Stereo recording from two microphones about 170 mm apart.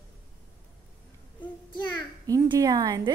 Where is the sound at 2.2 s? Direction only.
20° right (ahead or behind).